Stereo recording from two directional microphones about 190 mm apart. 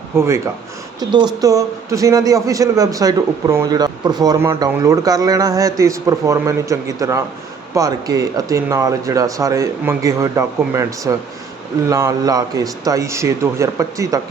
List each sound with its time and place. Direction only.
0.9 s a man's voice: 20° right (ahead or behind)